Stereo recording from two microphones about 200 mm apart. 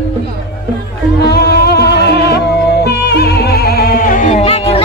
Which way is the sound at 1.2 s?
55° left (ahead or behind).